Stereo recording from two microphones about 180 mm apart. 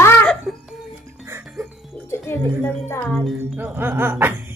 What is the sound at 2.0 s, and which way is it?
Music, 15° left (ahead or behind).